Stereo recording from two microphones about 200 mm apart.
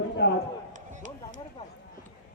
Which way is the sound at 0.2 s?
60° left (ahead or behind).